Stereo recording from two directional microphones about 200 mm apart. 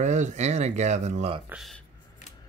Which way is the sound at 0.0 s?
35° right (ahead or behind).